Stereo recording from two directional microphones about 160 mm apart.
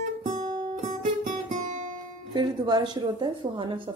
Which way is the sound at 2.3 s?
25° right (ahead or behind).